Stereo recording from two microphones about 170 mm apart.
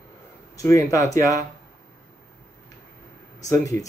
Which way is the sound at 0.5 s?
20° left (ahead or behind).